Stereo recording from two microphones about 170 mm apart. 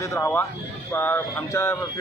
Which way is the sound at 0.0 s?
15° left (ahead or behind).